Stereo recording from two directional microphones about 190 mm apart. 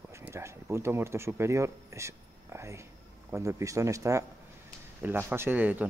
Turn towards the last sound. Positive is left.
turn(degrees=-10)  # may be behind; listen again after turning